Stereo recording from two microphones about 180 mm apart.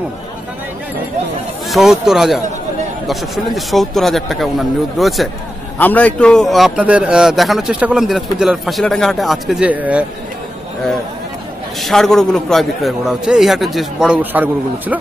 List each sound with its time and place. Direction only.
1.7 s a man's voice: centre (ahead or behind)
11.8 s a man's voice: centre (ahead or behind)